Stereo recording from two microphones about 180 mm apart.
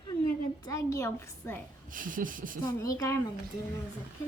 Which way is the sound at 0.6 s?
15° left (ahead or behind).